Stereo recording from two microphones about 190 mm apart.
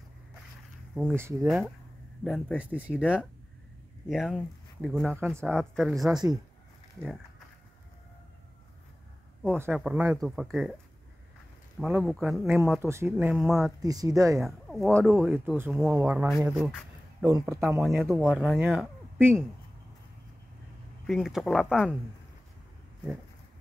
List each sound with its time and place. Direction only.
1.1 s speech: 15° right (ahead or behind)
2.2 s speech: centre (ahead or behind)
5.1 s speech: 10° right (ahead or behind)
5.4 s speech: 5° left (ahead or behind)
9.6 s speech: 5° right (ahead or behind)
11.8 s speech: 5° right (ahead or behind)
13.4 s speech: centre (ahead or behind)
13.7 s speech: 20° right (ahead or behind)
14.4 s speech: centre (ahead or behind)
15.2 s speech: 10° right (ahead or behind)
17.3 s speech: 15° right (ahead or behind)
21.1 s speech: centre (ahead or behind)